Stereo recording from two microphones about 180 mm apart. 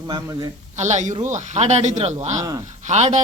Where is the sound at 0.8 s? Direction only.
40° right (ahead or behind).